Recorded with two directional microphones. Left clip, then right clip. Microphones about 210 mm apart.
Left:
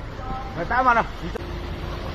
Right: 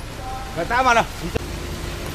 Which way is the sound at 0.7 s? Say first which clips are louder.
Right 2 dB; 90° right.